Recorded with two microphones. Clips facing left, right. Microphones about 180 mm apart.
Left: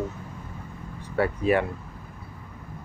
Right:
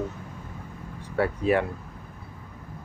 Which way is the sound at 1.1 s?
Centre (ahead or behind).